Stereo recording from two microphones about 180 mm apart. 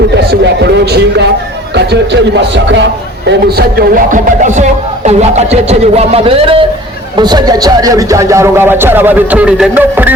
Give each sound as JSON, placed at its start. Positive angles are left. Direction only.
{"t": 0.3, "sound": "music", "side_deg": -65}
{"t": 1.7, "sound": "a man's voice", "side_deg": -75}
{"t": 7.2, "sound": "music", "side_deg": -20}